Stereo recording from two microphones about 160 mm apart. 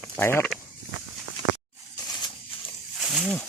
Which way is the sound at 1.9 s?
25° left (ahead or behind).